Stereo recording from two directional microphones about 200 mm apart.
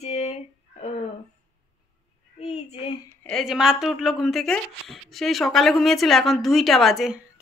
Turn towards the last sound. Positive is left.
turn(degrees=0)  # may be behind; listen again after turning